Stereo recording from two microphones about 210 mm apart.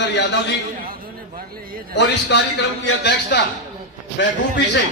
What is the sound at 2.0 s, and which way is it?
A man's voice, 55° left (ahead or behind).